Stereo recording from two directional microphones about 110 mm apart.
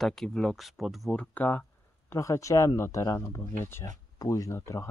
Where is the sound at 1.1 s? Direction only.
15° left (ahead or behind).